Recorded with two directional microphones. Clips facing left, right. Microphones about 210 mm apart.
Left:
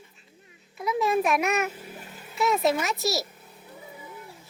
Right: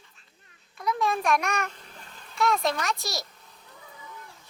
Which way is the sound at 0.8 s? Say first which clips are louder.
Left 3 dB; 5° left (ahead or behind).